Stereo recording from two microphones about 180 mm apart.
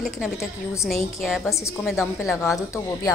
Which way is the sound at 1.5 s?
15° left (ahead or behind).